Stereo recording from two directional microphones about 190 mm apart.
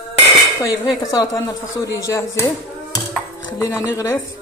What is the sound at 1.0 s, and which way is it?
Cutlery, 20° left (ahead or behind).